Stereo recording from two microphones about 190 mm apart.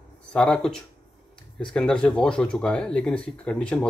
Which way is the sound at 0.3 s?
5° left (ahead or behind).